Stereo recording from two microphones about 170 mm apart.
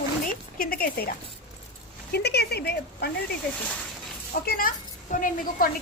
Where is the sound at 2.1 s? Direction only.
75° left (ahead or behind).